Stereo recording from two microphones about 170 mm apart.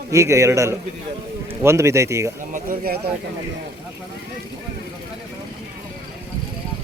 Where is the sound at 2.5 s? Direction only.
55° right (ahead or behind).